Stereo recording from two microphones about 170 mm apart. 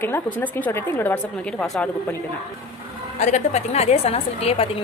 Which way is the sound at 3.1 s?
40° left (ahead or behind).